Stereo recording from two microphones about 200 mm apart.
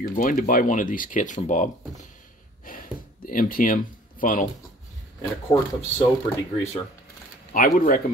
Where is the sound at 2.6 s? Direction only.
45° left (ahead or behind).